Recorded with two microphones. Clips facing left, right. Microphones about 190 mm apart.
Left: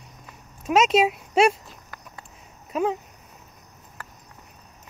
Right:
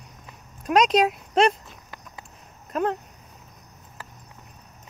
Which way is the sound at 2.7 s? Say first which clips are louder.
Left 1 dB; 5° left (ahead or behind).